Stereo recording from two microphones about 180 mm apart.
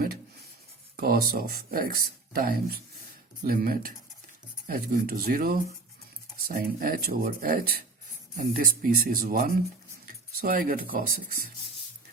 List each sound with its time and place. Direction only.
0.9 s speech: 55° right (ahead or behind)